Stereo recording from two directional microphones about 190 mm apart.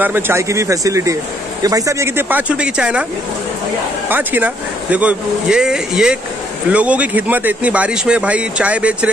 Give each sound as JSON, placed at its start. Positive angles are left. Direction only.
{"t": 0.0, "sound": "speech", "side_deg": -10}
{"t": 4.1, "sound": "speech", "side_deg": -10}